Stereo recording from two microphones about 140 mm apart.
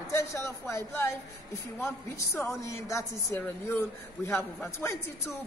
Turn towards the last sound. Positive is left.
turn(degrees=20)  # may be behind; listen again after turning